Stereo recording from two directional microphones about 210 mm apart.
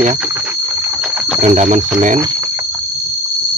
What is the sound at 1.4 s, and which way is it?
Speech, 35° right (ahead or behind).